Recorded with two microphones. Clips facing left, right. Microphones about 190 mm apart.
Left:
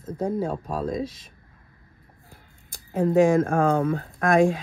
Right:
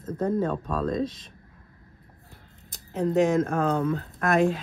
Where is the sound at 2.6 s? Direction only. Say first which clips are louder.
Left 3 dB; 50° left (ahead or behind).